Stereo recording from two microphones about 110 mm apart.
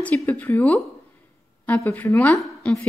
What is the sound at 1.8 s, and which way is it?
Speech, 20° left (ahead or behind).